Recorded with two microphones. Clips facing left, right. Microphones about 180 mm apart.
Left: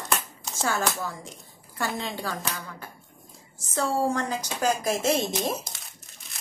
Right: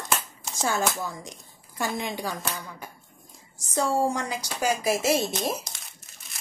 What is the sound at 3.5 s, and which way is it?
A woman's voice, 15° right (ahead or behind).